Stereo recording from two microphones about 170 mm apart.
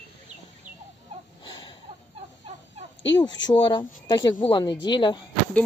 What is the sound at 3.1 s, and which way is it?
Speech, 25° left (ahead or behind).